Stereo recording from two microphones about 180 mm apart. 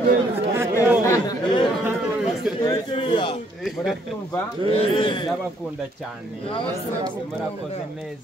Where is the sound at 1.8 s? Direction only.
5° right (ahead or behind).